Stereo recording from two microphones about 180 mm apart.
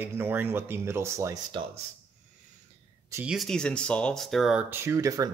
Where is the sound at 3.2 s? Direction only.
Centre (ahead or behind).